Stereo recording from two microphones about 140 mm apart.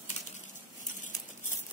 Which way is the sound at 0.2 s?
55° left (ahead or behind).